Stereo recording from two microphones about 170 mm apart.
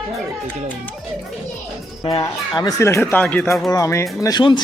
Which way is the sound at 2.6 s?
20° left (ahead or behind).